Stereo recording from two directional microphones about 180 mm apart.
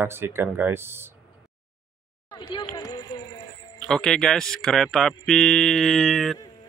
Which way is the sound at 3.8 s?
5° left (ahead or behind).